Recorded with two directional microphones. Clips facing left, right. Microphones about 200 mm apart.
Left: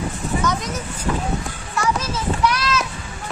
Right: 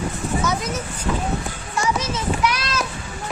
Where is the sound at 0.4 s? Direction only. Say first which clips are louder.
Left 1 dB; 5° right (ahead or behind).